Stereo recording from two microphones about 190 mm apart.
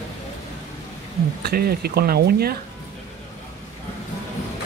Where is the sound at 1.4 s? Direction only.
55° right (ahead or behind).